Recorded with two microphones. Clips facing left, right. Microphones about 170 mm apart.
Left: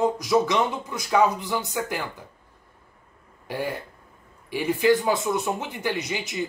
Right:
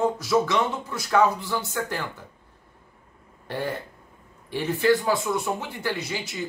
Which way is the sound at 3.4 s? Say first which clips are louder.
Even; 10° left (ahead or behind).